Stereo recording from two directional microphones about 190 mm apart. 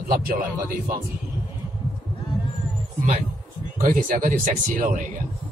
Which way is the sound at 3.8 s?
45° right (ahead or behind).